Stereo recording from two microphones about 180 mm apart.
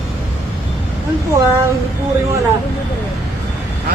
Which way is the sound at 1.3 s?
15° right (ahead or behind).